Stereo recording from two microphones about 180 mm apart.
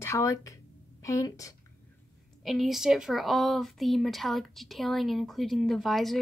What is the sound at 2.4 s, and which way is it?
Speech, centre (ahead or behind).